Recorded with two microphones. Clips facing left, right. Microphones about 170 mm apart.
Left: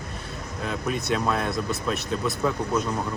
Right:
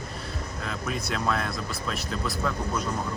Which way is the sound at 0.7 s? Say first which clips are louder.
Left 6 dB; centre (ahead or behind).